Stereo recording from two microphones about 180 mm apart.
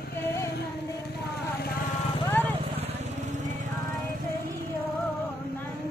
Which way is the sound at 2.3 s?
10° left (ahead or behind).